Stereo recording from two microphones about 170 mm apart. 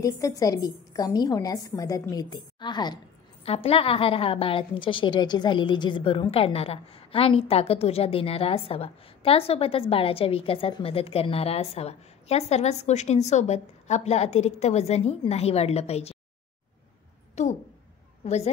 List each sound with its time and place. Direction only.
0.0 s a woman's voice: 20° left (ahead or behind)
3.4 s a woman's voice: 35° left (ahead or behind)
17.4 s a woman's voice: 45° left (ahead or behind)